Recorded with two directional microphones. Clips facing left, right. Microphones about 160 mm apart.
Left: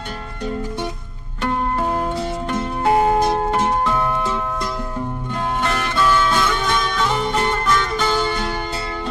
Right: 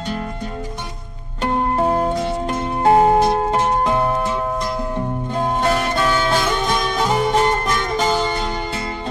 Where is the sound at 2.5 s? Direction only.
30° right (ahead or behind).